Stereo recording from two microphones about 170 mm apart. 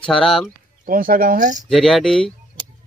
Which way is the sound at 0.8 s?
55° right (ahead or behind).